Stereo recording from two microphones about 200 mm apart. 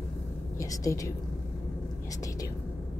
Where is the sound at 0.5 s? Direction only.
15° left (ahead or behind).